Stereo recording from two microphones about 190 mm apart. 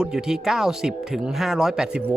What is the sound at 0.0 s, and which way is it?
Speech, 5° right (ahead or behind).